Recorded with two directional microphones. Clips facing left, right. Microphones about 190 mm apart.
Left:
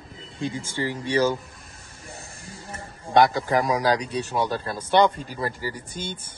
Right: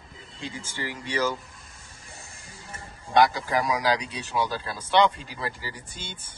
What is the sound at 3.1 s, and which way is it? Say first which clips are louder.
Speech: left 3 dB; 55° left (ahead or behind).